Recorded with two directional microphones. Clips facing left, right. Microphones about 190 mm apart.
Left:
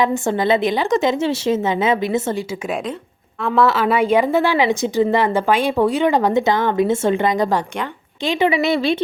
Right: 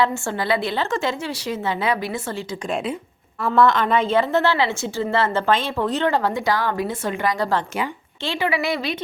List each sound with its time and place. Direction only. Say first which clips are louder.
0.0 s a woman's voice: left 4 dB; 20° left (ahead or behind)
3.4 s a woman's voice: left 1 dB; centre (ahead or behind); by 9.0 s 25° left (ahead or behind)